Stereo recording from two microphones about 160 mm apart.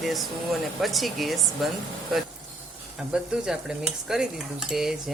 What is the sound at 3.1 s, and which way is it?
Cutlery, 5° right (ahead or behind).